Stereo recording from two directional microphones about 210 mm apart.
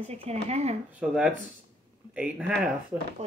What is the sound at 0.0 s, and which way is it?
Speech, 30° right (ahead or behind).